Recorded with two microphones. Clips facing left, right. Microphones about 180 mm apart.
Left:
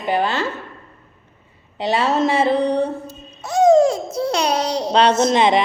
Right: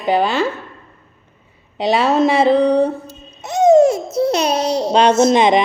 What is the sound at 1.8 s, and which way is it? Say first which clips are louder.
Speech: right 4 dB; 15° right (ahead or behind).